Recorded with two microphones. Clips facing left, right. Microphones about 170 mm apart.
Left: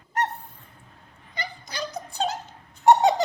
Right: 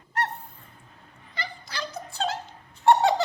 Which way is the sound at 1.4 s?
15° left (ahead or behind).